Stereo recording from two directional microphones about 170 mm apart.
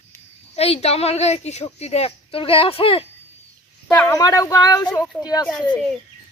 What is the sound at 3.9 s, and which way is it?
Speech, 15° left (ahead or behind).